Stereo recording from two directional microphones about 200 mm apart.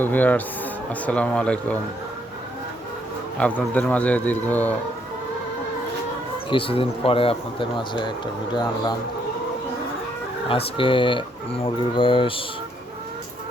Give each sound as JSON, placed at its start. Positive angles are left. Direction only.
{"t": 0.0, "sound": "speech", "side_deg": 10}
{"t": 3.3, "sound": "speech", "side_deg": 5}
{"t": 6.5, "sound": "speech", "side_deg": 25}
{"t": 10.8, "sound": "speech", "side_deg": 25}